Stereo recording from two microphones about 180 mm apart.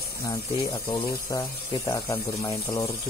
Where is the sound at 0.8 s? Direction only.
20° left (ahead or behind).